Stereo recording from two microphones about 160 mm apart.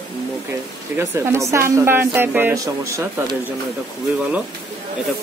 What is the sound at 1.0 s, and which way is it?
A woman's voice, 15° right (ahead or behind).